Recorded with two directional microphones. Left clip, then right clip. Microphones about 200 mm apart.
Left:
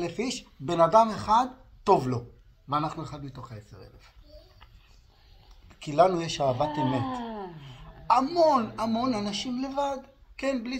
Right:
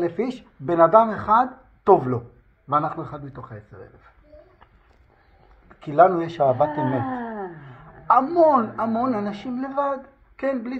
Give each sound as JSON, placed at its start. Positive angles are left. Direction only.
{"t": 0.0, "sound": "a man's voice", "side_deg": 10}
{"t": 5.7, "sound": "a man's voice", "side_deg": 15}